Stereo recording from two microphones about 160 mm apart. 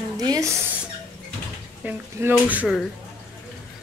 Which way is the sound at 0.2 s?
25° right (ahead or behind).